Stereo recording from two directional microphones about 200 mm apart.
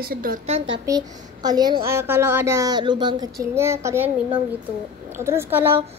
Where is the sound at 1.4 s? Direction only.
20° right (ahead or behind).